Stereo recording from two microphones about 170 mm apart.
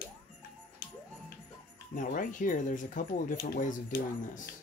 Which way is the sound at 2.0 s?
50° left (ahead or behind).